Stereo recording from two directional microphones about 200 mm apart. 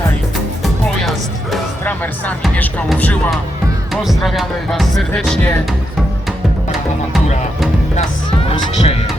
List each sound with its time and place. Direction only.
0.6 s music: centre (ahead or behind)
4.0 s speech: centre (ahead or behind)
7.9 s music: 30° left (ahead or behind)